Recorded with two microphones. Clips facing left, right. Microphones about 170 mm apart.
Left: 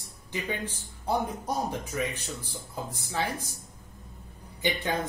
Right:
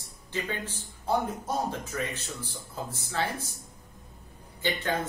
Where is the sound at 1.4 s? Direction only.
15° left (ahead or behind).